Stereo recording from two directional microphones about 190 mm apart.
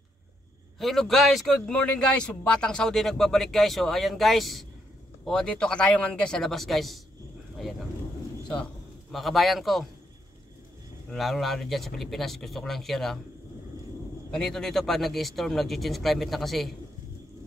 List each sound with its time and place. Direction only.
0.7 s speech: centre (ahead or behind)
9.1 s speech: centre (ahead or behind)
11.1 s speech: centre (ahead or behind)
14.3 s speech: 5° left (ahead or behind)